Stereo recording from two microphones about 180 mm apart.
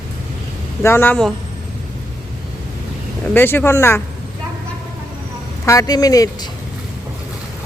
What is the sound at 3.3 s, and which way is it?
Speech, 10° left (ahead or behind).